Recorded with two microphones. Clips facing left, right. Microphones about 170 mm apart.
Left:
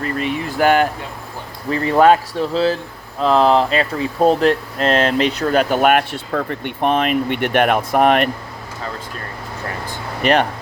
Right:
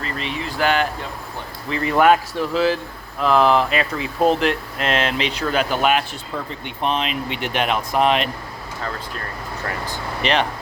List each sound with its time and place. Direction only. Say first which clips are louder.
0.0 s speech: left 6 dB; 50° left (ahead or behind)
1.7 s speech: left 3 dB; 30° left (ahead or behind); by 8.3 s 55° left (ahead or behind)